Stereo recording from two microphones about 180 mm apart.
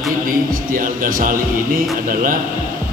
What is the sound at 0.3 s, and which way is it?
Music, 50° right (ahead or behind).